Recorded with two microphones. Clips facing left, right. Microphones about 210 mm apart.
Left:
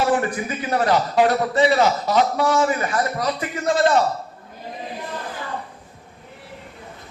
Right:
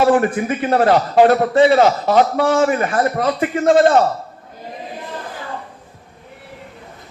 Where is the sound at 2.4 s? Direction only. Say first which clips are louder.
Right 4 dB; 30° right (ahead or behind).